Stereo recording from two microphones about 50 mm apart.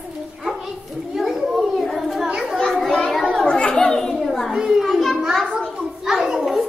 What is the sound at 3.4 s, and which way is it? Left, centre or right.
Chatter, centre.